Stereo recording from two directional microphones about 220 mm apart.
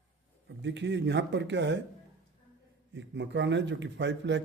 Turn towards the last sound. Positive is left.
turn(degrees=-55)  # may be behind; listen again after turning